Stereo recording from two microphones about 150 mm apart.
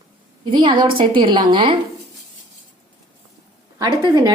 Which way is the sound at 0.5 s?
35° right (ahead or behind).